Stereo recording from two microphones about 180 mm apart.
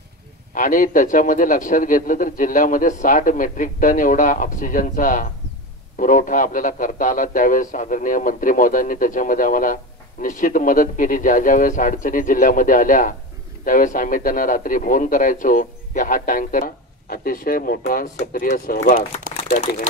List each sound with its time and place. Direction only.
0.6 s a man's voice: 45° left (ahead or behind)